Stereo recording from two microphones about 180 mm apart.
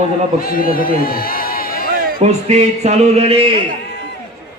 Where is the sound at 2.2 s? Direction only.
40° right (ahead or behind).